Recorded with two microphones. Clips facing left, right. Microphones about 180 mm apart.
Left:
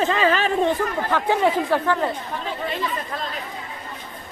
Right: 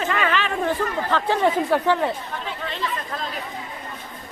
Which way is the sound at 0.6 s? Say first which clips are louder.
Left 2 dB; 15° left (ahead or behind).